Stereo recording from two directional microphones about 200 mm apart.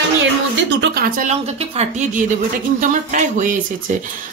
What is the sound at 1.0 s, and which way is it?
Speech, 40° right (ahead or behind).